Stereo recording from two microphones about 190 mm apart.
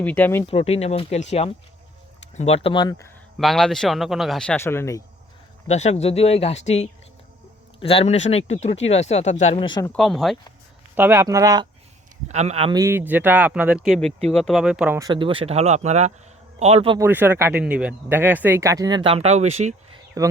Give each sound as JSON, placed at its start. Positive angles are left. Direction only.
{"t": 0.0, "sound": "speech", "side_deg": 10}
{"t": 0.4, "sound": "speech", "side_deg": 30}
{"t": 3.3, "sound": "speech", "side_deg": 0}
{"t": 5.6, "sound": "speech", "side_deg": 35}
{"t": 9.8, "sound": "speech", "side_deg": 5}
{"t": 10.9, "sound": "speech", "side_deg": -10}
{"t": 12.3, "sound": "speech", "side_deg": -35}
{"t": 12.7, "sound": "speech", "side_deg": -15}
{"t": 14.9, "sound": "speech", "side_deg": -20}
{"t": 17.0, "sound": "speech", "side_deg": -10}
{"t": 20.2, "sound": "speech", "side_deg": -15}